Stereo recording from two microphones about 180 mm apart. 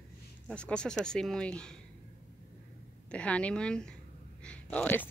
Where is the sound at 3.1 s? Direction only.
5° left (ahead or behind).